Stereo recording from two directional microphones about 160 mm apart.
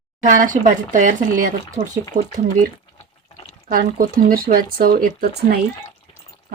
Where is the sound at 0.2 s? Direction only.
55° right (ahead or behind).